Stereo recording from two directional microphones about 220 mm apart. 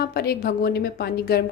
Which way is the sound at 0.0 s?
45° left (ahead or behind).